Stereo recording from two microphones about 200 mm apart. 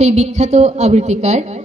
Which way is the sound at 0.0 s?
35° right (ahead or behind).